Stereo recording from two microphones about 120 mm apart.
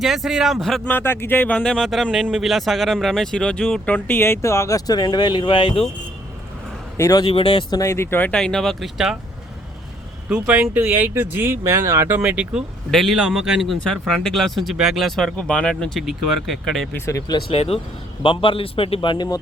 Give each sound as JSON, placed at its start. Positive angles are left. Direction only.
{"t": 0.0, "sound": "speech", "side_deg": 0}
{"t": 0.9, "sound": "speech", "side_deg": 20}
{"t": 6.9, "sound": "a man's voice", "side_deg": 25}
{"t": 7.3, "sound": "speech", "side_deg": 45}
{"t": 10.2, "sound": "speech", "side_deg": -10}
{"t": 17.1, "sound": "speech", "side_deg": 30}
{"t": 17.5, "sound": "a man's voice", "side_deg": 55}